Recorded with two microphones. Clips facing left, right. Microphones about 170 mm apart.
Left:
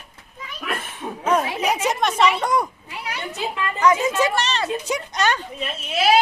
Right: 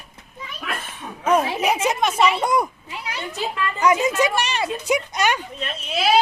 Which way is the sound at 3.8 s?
15° right (ahead or behind).